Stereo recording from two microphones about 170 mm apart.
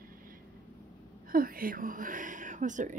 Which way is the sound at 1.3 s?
55° right (ahead or behind).